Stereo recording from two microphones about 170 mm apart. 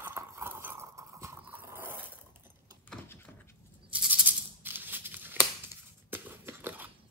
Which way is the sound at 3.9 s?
5° right (ahead or behind).